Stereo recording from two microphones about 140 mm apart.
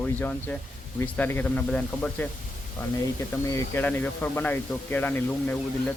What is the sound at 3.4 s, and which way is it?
Speech, 20° left (ahead or behind).